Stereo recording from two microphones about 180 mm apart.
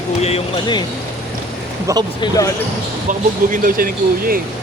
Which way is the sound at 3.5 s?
50° right (ahead or behind).